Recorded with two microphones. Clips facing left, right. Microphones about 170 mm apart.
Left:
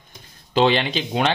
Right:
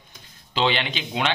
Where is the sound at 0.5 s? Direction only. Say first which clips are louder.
Left 6 dB; 40° left (ahead or behind).